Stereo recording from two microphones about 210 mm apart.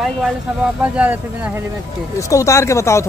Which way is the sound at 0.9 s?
5° right (ahead or behind).